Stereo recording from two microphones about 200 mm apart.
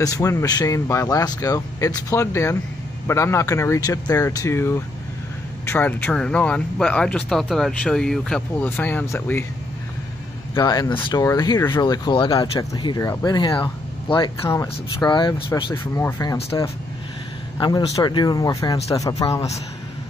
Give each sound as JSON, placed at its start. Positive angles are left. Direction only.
{"t": 0.0, "sound": "speech", "side_deg": 15}
{"t": 10.5, "sound": "speech", "side_deg": 20}
{"t": 17.6, "sound": "speech", "side_deg": 20}